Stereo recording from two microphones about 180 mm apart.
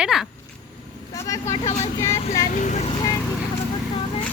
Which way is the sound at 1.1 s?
15° left (ahead or behind).